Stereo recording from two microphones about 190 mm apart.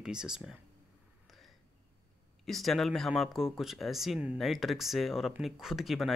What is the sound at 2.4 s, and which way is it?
Speech, centre (ahead or behind).